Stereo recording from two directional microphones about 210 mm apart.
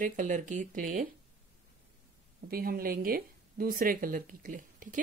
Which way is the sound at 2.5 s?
45° right (ahead or behind).